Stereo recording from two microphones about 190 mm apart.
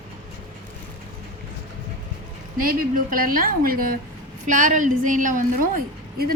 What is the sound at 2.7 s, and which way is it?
A woman's voice, 50° right (ahead or behind).